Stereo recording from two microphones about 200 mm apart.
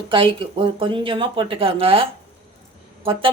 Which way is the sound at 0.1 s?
25° right (ahead or behind).